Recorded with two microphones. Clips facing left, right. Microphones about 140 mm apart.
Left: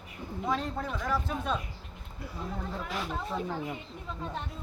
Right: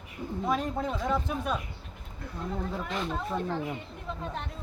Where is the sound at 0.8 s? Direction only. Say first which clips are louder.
Right 3 dB; 20° right (ahead or behind).